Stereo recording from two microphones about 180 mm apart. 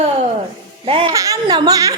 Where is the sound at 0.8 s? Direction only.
30° right (ahead or behind).